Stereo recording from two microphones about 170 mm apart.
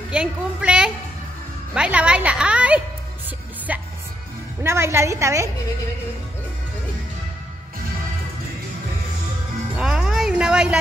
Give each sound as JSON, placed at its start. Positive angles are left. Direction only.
{"t": 0.1, "sound": "a woman's voice", "side_deg": -5}
{"t": 4.6, "sound": "a woman's voice", "side_deg": -15}
{"t": 9.8, "sound": "music", "side_deg": -5}